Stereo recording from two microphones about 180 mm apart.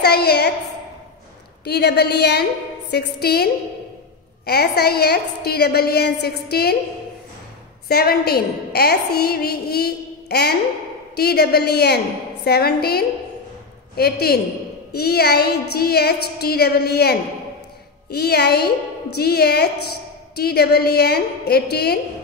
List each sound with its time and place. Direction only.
0.0 s a woman's voice: 65° left (ahead or behind)
1.6 s a woman's voice: 65° left (ahead or behind)
4.5 s a woman's voice: 65° left (ahead or behind)
7.9 s a woman's voice: 60° left (ahead or behind)